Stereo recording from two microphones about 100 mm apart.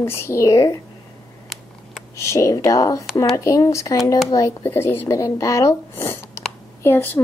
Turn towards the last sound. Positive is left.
turn(degrees=20)  # may be behind; listen again after turning